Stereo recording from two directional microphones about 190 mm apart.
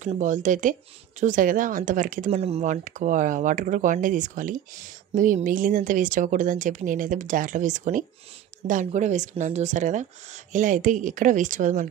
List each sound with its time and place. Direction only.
0.0 s speech: 40° right (ahead or behind)